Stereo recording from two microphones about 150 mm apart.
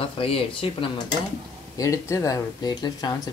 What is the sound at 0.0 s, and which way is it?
Speech, 40° left (ahead or behind).